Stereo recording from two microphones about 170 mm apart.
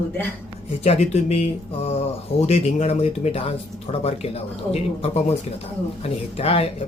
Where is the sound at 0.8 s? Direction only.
40° left (ahead or behind).